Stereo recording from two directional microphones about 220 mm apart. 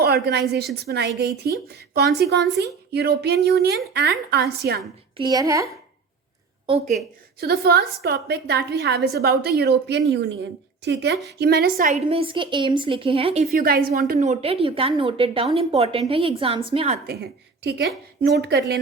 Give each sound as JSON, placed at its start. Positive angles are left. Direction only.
{"t": 0.0, "sound": "a woman's voice", "side_deg": -45}
{"t": 5.1, "sound": "a woman's voice", "side_deg": -20}
{"t": 6.7, "sound": "a woman's voice", "side_deg": -30}
{"t": 7.3, "sound": "a woman's voice", "side_deg": -45}
{"t": 11.9, "sound": "a woman's voice", "side_deg": -25}
{"t": 13.5, "sound": "a woman's voice", "side_deg": -40}
{"t": 14.1, "sound": "a woman's voice", "side_deg": -30}
{"t": 17.1, "sound": "a woman's voice", "side_deg": -45}